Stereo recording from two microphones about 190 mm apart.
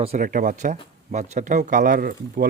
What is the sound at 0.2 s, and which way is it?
Speech, 45° right (ahead or behind).